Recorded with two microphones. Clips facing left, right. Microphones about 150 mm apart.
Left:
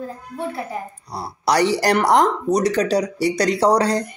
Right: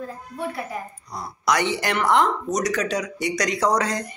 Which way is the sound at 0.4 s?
30° left (ahead or behind).